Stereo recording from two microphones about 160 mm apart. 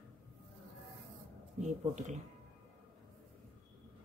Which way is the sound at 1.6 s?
45° right (ahead or behind).